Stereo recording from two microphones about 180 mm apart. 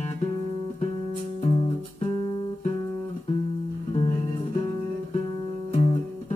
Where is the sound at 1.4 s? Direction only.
40° left (ahead or behind).